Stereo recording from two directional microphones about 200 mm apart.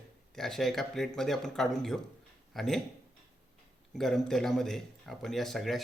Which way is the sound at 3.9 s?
Centre (ahead or behind).